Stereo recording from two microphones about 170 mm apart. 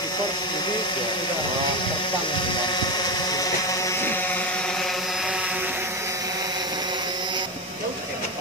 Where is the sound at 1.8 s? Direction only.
30° left (ahead or behind); by 7.4 s 25° right (ahead or behind).